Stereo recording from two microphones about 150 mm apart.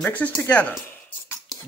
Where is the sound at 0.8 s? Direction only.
15° left (ahead or behind).